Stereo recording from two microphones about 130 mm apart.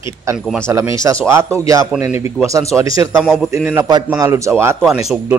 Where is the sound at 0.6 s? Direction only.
25° right (ahead or behind).